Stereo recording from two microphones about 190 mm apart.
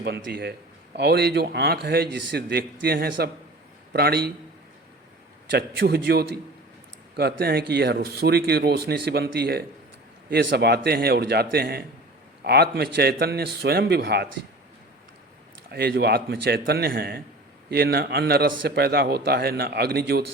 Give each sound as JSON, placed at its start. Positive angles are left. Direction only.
{"t": 0.0, "sound": "a man's voice", "side_deg": -60}
{"t": 5.5, "sound": "a man's voice", "side_deg": -60}
{"t": 15.7, "sound": "a man's voice", "side_deg": -55}